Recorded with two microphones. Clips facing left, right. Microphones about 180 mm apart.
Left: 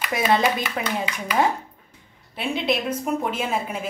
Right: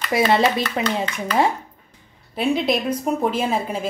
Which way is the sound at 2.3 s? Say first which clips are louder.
Right 4 dB; 40° right (ahead or behind).